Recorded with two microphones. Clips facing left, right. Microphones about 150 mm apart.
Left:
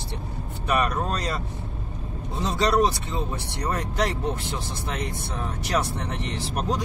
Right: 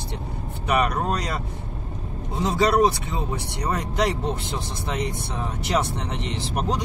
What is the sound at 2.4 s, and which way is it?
Speech, 15° right (ahead or behind).